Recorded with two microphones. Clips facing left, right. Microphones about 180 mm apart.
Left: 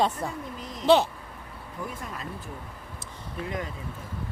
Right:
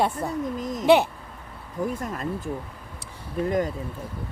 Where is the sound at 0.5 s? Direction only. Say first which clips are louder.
Right 2 dB; 45° right (ahead or behind).